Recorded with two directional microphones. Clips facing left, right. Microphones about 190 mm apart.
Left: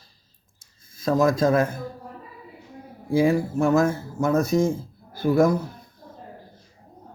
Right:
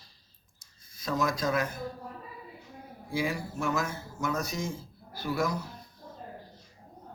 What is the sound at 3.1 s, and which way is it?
Speech, 50° left (ahead or behind).